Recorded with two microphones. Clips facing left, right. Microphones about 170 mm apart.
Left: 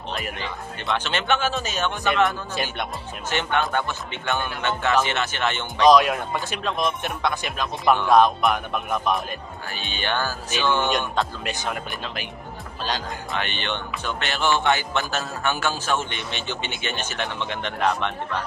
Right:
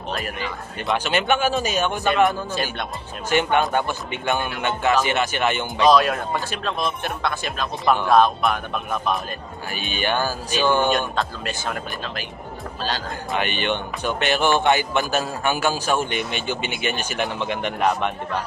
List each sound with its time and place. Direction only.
0.9 s a man's voice: 10° right (ahead or behind)
2.5 s speech: 15° left (ahead or behind)
3.3 s a man's voice: 10° right (ahead or behind)
5.9 s speech: 15° left (ahead or behind)
9.9 s a man's voice: 10° right (ahead or behind)
11.1 s speech: 15° left (ahead or behind)
13.3 s a man's voice: 15° right (ahead or behind)